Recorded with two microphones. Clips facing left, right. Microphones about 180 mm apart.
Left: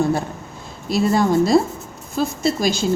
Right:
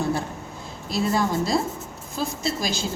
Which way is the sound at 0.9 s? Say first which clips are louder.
Left 6 dB; 55° left (ahead or behind).